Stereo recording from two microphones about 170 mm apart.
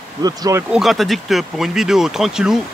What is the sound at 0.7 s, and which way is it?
Speech, centre (ahead or behind).